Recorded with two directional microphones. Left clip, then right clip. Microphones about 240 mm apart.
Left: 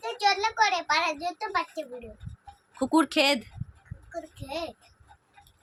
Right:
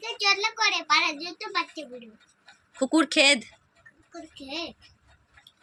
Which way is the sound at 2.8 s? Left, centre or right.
Centre.